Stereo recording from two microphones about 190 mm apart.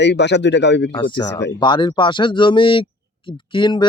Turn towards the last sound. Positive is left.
turn(degrees=25)  # may be behind; listen again after turning